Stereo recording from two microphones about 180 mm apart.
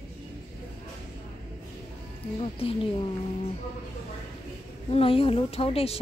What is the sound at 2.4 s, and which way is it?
Speech, 30° left (ahead or behind).